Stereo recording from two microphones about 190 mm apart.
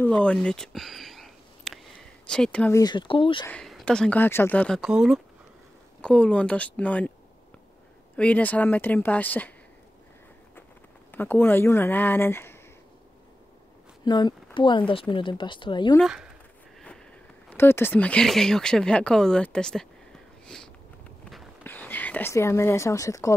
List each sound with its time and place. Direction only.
0.0 s a sound: 5° left (ahead or behind)
2.8 s speech: 25° left (ahead or behind)
3.4 s speech: 5° left (ahead or behind)
8.2 s speech: 10° left (ahead or behind)
11.1 s speech: 10° left (ahead or behind)
14.0 s speech: 20° left (ahead or behind)
16.0 s speech: centre (ahead or behind)
17.6 s speech: 10° left (ahead or behind)
20.4 s sniff: 5° left (ahead or behind)
21.6 s speech: 10° left (ahead or behind)